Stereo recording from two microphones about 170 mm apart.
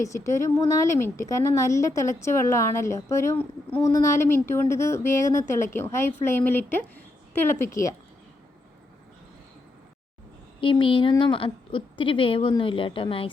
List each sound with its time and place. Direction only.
0.0 s a woman's voice: 20° left (ahead or behind)
10.6 s a woman's voice: 30° left (ahead or behind)